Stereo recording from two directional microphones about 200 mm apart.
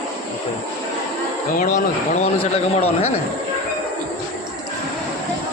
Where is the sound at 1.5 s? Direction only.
40° left (ahead or behind).